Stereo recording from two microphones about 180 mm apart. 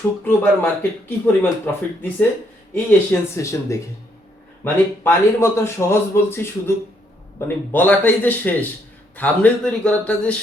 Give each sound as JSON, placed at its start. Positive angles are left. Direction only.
{"t": 0.3, "sound": "a man's voice", "side_deg": 10}